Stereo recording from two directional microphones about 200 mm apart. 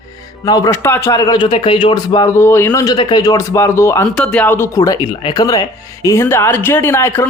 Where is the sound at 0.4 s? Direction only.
20° left (ahead or behind).